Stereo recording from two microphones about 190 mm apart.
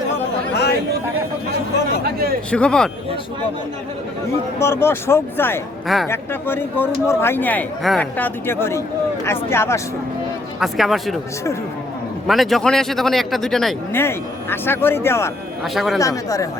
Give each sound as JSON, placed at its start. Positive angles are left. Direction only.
{"t": 0.5, "sound": "chatter", "side_deg": 60}
{"t": 2.0, "sound": "a man's voice", "side_deg": -55}
{"t": 2.5, "sound": "a man's voice", "side_deg": 5}
{"t": 4.6, "sound": "a man's voice", "side_deg": 15}
{"t": 10.6, "sound": "a man's voice", "side_deg": 0}
{"t": 12.3, "sound": "a man's voice", "side_deg": 0}
{"t": 13.9, "sound": "a man's voice", "side_deg": 10}
{"t": 15.6, "sound": "a man's voice", "side_deg": 0}
{"t": 16.0, "sound": "a man's voice", "side_deg": 15}